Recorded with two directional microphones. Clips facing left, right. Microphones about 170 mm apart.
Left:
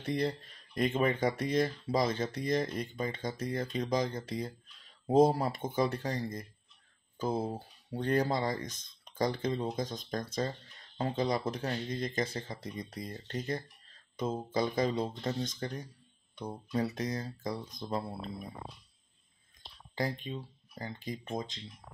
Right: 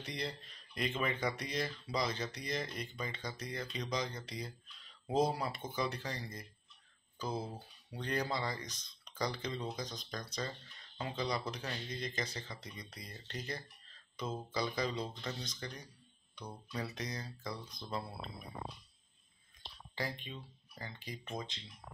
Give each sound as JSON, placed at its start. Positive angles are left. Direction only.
{"t": 0.0, "sound": "speech", "side_deg": 50}
{"t": 20.0, "sound": "speech", "side_deg": 40}